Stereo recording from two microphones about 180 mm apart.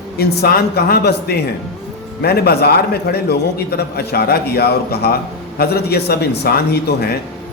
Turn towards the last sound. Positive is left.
turn(degrees=60)  # may be behind; listen again after turning